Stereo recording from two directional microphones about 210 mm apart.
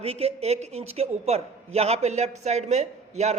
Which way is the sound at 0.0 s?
30° right (ahead or behind).